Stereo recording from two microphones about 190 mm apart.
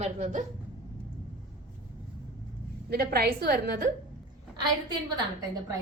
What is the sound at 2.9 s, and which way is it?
Speech, 55° right (ahead or behind).